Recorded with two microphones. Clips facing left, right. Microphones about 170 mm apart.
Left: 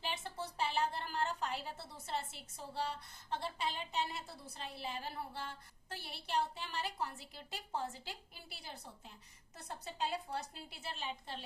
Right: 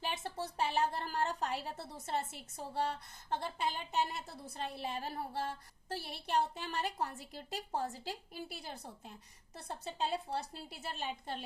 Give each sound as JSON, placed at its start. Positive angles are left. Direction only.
{"t": 0.0, "sound": "a woman's voice", "side_deg": -40}
{"t": 9.6, "sound": "a woman's voice", "side_deg": -30}